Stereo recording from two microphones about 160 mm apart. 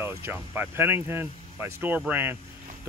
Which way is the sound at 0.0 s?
15° right (ahead or behind).